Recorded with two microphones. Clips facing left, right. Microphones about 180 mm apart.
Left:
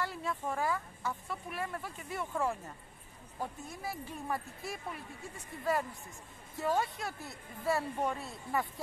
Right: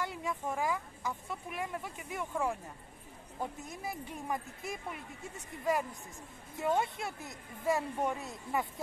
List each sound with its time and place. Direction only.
0.0 s speech: 15° right (ahead or behind)
3.6 s speech: 20° right (ahead or behind)
6.6 s speech: 20° right (ahead or behind)